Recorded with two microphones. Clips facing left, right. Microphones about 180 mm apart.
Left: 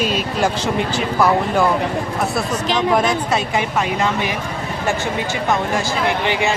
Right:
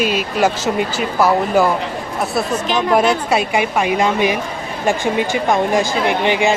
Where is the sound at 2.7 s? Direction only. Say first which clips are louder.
Right 3 dB; 10° right (ahead or behind).